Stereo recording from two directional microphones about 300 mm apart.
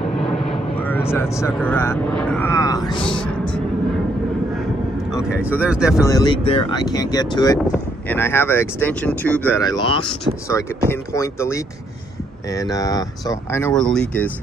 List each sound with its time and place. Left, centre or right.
0.7 s speech: centre
5.4 s speech: centre
6.0 s speech: centre